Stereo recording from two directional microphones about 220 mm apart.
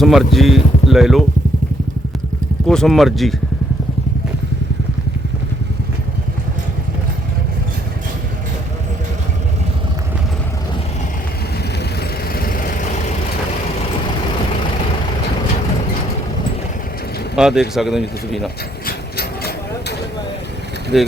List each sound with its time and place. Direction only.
0.0 s speech: centre (ahead or behind)
2.6 s speech: centre (ahead or behind)
11.9 s vehicle: 40° left (ahead or behind)
17.3 s a man's voice: 5° right (ahead or behind)
18.9 s a sound: 45° left (ahead or behind)
20.9 s speech: centre (ahead or behind)